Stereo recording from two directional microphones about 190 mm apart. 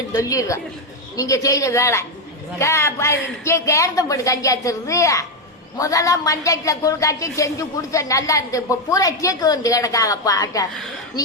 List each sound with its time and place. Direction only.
0.1 s a woman's voice: 15° left (ahead or behind)